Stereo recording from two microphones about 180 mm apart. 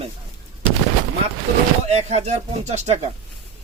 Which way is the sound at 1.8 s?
40° right (ahead or behind).